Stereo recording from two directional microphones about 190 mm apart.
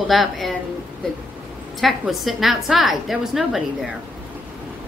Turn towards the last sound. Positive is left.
turn(degrees=0)  # may be behind; listen again after turning